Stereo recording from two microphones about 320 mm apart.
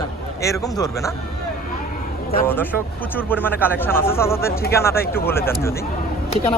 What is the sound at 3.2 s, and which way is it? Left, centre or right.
Speech, centre.